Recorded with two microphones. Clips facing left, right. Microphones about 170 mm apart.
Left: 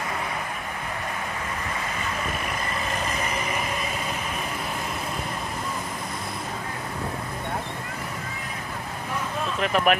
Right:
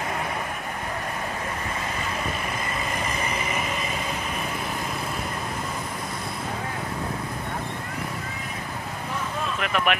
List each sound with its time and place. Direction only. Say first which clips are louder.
9.6 s speech: left 4 dB; 35° left (ahead or behind)